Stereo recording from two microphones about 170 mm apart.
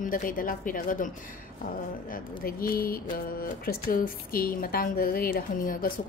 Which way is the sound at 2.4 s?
60° left (ahead or behind).